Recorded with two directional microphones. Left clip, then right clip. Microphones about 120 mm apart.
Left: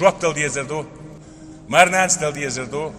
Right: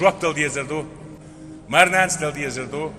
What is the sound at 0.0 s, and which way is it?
A man's voice, 25° left (ahead or behind).